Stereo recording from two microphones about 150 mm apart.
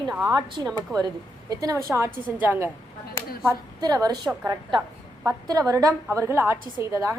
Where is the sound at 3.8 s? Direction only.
25° right (ahead or behind).